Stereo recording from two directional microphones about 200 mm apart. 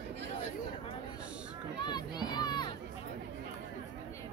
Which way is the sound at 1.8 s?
20° left (ahead or behind).